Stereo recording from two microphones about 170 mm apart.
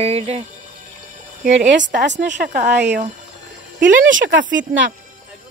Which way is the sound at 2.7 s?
80° right.